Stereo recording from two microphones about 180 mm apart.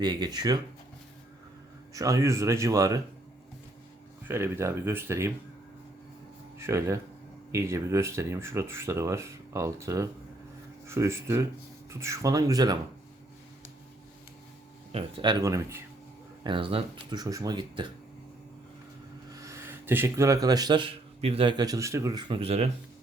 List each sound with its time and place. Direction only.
0.0 s speech: 25° right (ahead or behind)
1.9 s speech: 20° right (ahead or behind)
4.3 s speech: 15° right (ahead or behind)
6.6 s speech: 15° right (ahead or behind)
14.9 s speech: 30° right (ahead or behind)
19.3 s speech: 15° right (ahead or behind); by 22.7 s 35° right (ahead or behind)